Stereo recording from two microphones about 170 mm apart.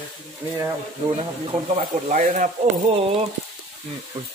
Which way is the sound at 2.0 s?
50° right (ahead or behind).